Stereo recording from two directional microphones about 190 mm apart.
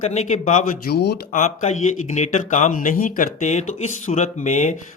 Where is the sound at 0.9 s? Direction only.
60° left (ahead or behind).